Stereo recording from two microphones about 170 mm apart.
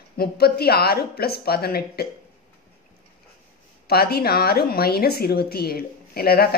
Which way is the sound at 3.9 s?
65° left (ahead or behind).